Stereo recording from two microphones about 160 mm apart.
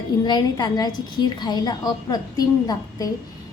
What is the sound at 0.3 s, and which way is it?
A woman's voice, 25° left (ahead or behind).